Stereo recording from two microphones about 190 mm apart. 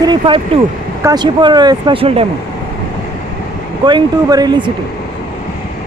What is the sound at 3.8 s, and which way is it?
Speech, 20° right (ahead or behind).